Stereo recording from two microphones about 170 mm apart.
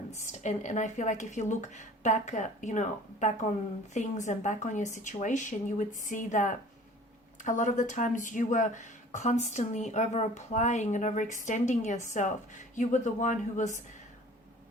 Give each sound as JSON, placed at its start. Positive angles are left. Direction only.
{"t": 0.1, "sound": "speech", "side_deg": 45}